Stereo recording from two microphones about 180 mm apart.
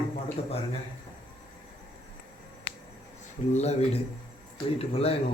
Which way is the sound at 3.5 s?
35° left (ahead or behind).